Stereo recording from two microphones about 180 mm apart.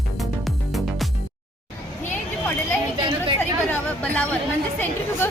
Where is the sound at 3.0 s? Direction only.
30° right (ahead or behind).